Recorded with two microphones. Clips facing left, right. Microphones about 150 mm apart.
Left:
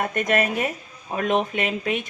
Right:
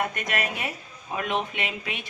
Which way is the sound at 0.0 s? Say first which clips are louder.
Left 6 dB; 45° left (ahead or behind).